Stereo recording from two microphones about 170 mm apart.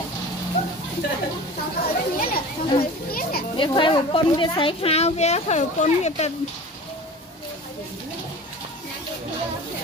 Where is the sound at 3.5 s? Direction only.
30° left (ahead or behind).